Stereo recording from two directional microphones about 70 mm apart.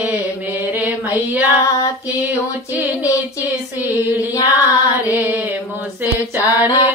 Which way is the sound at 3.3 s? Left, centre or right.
Right.